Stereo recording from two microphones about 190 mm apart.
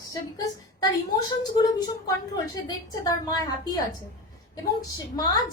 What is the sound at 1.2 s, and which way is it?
A woman's voice, 20° left (ahead or behind).